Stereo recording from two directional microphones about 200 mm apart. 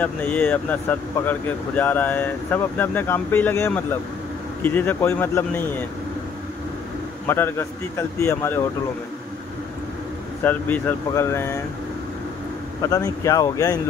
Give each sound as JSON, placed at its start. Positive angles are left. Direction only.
{"t": 0.0, "sound": "speech", "side_deg": 10}
{"t": 7.2, "sound": "speech", "side_deg": 10}
{"t": 10.4, "sound": "speech", "side_deg": 10}
{"t": 12.8, "sound": "speech", "side_deg": 15}